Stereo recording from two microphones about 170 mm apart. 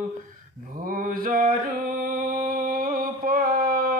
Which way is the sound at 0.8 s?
55° right (ahead or behind).